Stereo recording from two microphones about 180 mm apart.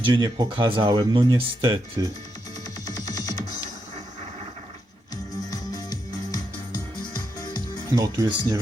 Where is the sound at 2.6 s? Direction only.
20° left (ahead or behind).